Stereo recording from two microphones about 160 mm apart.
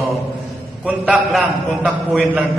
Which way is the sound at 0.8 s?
5° right (ahead or behind).